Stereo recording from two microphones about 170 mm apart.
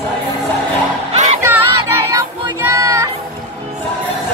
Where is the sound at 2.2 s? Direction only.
20° right (ahead or behind).